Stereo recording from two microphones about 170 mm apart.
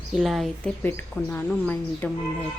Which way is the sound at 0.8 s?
10° left (ahead or behind).